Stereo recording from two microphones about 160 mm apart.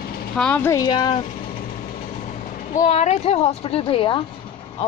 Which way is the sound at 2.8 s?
45° left (ahead or behind).